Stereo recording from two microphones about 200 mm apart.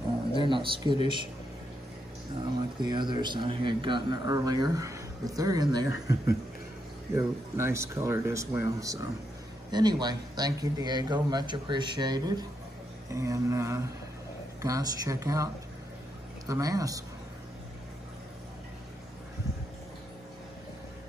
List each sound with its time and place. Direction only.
0.3 s speech: 25° right (ahead or behind)
2.8 s a man's voice: 20° right (ahead or behind)
5.9 s speech: 60° left (ahead or behind)
7.2 s a man's voice: 15° right (ahead or behind)